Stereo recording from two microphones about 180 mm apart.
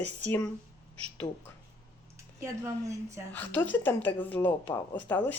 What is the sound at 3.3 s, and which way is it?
A woman's voice, 10° left (ahead or behind).